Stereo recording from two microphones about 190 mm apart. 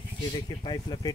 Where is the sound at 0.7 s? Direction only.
20° left (ahead or behind).